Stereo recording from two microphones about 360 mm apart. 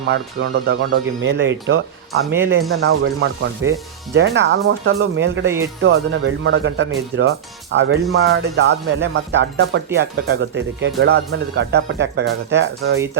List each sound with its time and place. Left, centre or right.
0.1 s speech: right
2.2 s speech: centre
2.8 s speech: right